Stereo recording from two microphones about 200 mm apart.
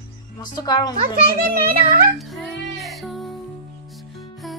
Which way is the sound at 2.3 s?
Centre (ahead or behind).